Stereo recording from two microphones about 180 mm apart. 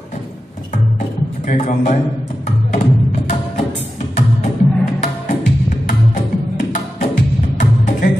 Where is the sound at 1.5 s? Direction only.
40° left (ahead or behind).